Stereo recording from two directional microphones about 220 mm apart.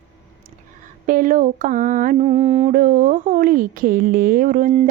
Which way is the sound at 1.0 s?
35° right (ahead or behind).